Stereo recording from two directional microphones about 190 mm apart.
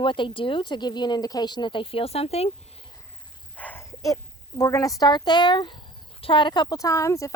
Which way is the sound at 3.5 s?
10° left (ahead or behind).